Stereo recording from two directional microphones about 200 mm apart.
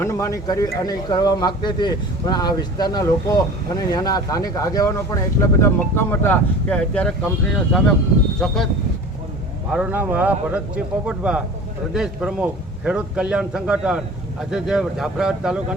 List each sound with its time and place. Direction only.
0.0 s a man's voice: 15° left (ahead or behind)
9.7 s a man's voice: 5° right (ahead or behind)